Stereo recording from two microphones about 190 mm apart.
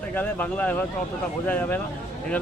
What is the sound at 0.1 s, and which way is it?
Speech, 10° left (ahead or behind).